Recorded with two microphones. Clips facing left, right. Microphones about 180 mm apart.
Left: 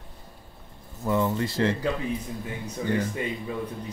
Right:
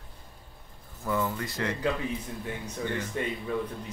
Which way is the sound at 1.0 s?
20° left (ahead or behind).